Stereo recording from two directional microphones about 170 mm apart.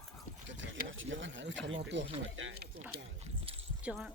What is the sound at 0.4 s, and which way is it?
Sewing machine, 90° right.